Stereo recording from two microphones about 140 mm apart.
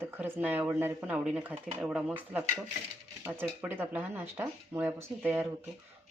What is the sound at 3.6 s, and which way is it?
Speech, 15° right (ahead or behind).